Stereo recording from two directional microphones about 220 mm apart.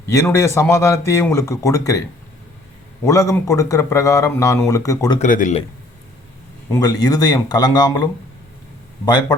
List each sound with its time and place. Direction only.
0.1 s speech: 15° left (ahead or behind)
3.0 s speech: 15° left (ahead or behind)
5.2 s speech: 35° left (ahead or behind)
6.7 s speech: 15° left (ahead or behind)